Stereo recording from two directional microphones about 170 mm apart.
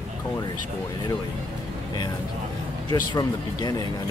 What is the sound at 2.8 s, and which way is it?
Speech, 25° left (ahead or behind).